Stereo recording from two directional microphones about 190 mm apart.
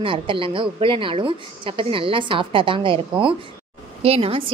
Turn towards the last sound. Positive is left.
turn(degrees=-30)  # may be behind; listen again after turning